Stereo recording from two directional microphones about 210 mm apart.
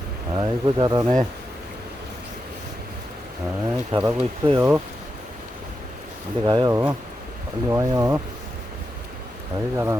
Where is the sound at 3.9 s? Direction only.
20° right (ahead or behind).